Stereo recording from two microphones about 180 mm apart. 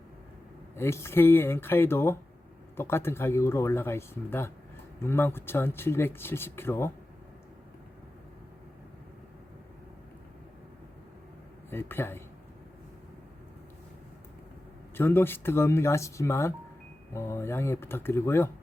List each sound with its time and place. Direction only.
0.8 s speech: 15° left (ahead or behind)
11.7 s speech: 10° left (ahead or behind)
14.9 s speech: 10° left (ahead or behind)